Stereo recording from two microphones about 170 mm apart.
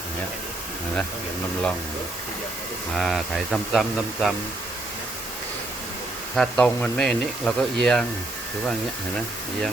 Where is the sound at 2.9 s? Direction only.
Centre (ahead or behind).